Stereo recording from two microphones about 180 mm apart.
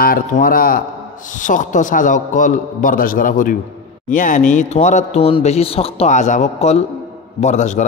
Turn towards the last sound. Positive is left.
turn(degrees=40)  # may be behind; listen again after turning